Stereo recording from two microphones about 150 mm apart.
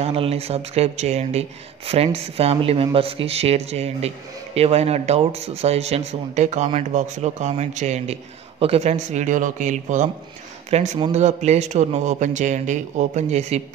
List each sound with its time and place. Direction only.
0.0 s speech: 40° right (ahead or behind)